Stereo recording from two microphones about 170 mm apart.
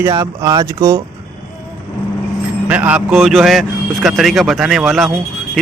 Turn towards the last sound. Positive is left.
turn(degrees=0)  # may be behind; listen again after turning